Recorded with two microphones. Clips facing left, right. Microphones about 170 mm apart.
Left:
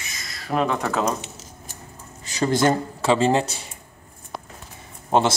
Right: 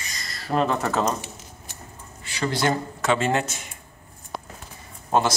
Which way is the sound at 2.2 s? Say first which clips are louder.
Left 5 dB; 40° left (ahead or behind).